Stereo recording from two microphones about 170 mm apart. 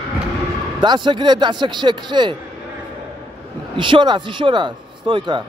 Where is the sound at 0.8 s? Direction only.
25° right (ahead or behind).